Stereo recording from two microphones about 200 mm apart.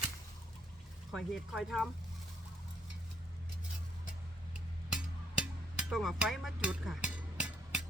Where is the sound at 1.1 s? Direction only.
Centre (ahead or behind).